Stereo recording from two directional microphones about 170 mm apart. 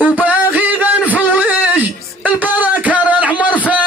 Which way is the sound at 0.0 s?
10° right (ahead or behind).